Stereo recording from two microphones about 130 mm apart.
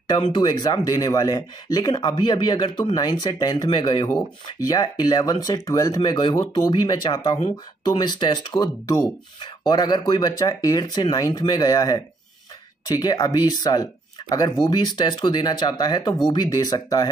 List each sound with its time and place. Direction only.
0.3 s speech: 30° left (ahead or behind)